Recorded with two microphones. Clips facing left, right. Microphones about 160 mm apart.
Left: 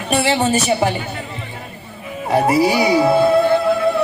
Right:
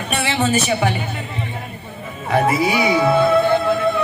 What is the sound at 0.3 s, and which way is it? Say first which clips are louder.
Speech: even; 35° left (ahead or behind).